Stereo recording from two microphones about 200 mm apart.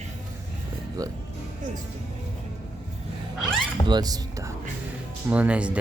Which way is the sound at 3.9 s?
20° right (ahead or behind).